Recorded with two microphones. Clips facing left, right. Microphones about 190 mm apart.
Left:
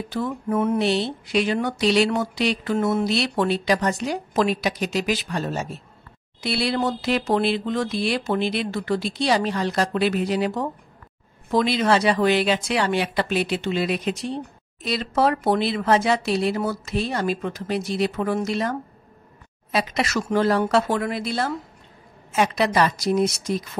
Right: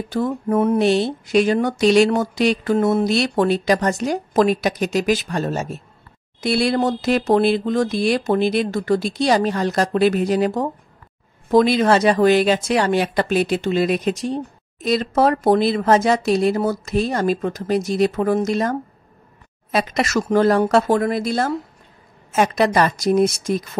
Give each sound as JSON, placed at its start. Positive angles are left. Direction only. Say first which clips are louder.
{"t": 0.1, "sound": "speech", "louder": "right 5 dB", "side_deg": -45}